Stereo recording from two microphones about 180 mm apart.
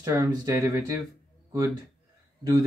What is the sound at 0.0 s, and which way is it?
Speech, 20° right (ahead or behind).